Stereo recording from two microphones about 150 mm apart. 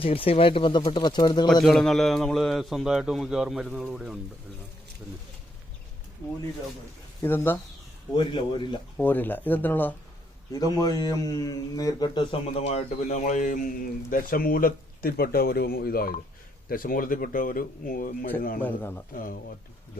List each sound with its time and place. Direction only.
0.0 s speech: 40° left (ahead or behind)
1.6 s a man's voice: centre (ahead or behind)
7.2 s speech: 15° left (ahead or behind)
8.1 s speech: 35° left (ahead or behind)
9.0 s speech: 10° left (ahead or behind)
10.5 s speech: 25° left (ahead or behind)
12.6 s speech: 50° left (ahead or behind)
14.1 s speech: 75° left (ahead or behind)
16.6 s speech: 70° left (ahead or behind)
18.6 s speech: 15° left (ahead or behind)
19.1 s speech: 70° left (ahead or behind)